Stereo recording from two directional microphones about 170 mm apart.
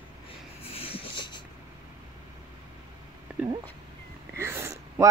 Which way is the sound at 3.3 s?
10° right (ahead or behind).